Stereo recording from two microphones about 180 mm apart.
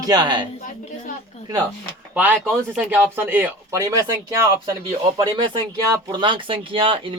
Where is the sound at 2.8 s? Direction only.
10° right (ahead or behind).